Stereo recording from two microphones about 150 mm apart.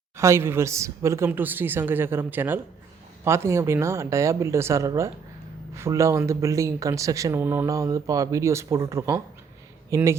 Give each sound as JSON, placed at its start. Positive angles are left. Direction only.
{"t": 0.2, "sound": "a woman's voice", "side_deg": -20}